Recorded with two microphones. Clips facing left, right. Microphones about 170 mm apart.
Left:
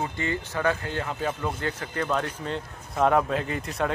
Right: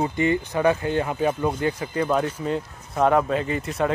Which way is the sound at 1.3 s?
30° right (ahead or behind).